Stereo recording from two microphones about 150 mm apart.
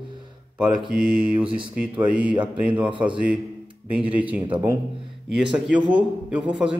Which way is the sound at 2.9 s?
35° right (ahead or behind).